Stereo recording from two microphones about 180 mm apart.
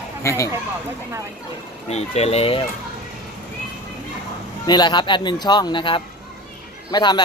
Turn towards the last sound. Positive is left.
turn(degrees=25)  # may be behind; listen again after turning